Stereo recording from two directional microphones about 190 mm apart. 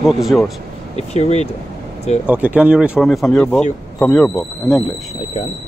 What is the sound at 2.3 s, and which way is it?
A man's voice, 10° right (ahead or behind).